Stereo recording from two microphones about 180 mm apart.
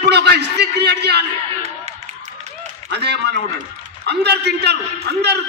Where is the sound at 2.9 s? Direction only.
65° right (ahead or behind).